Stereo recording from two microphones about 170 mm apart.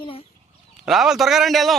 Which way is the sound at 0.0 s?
30° left (ahead or behind).